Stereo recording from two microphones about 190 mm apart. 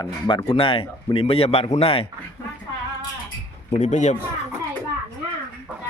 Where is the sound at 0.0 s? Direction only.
25° left (ahead or behind).